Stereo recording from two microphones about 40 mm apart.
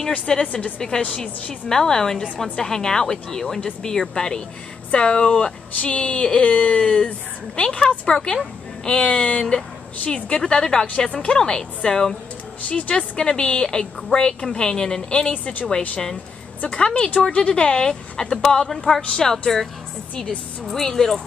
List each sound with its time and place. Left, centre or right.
0.3 s a woman's voice: left
12.6 s a woman's voice: left
15.3 s a woman's voice: left
16.6 s a woman's voice: left
20.8 s a woman's voice: centre